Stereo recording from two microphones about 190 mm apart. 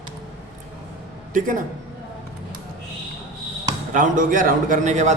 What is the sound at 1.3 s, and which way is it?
Speech, 45° right (ahead or behind).